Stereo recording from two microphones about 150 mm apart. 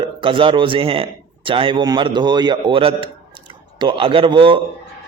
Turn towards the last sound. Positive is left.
turn(degrees=-35)  # may be behind; listen again after turning